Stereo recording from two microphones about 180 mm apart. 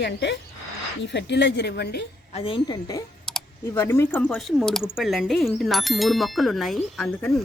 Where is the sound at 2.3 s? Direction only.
30° left (ahead or behind); by 7.3 s centre (ahead or behind).